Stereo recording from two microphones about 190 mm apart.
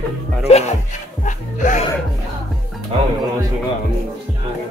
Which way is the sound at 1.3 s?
40° left (ahead or behind).